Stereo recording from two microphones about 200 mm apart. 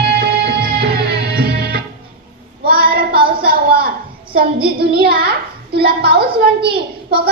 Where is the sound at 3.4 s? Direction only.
50° right (ahead or behind).